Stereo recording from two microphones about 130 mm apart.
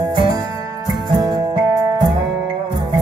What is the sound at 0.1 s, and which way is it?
Music, 30° right (ahead or behind).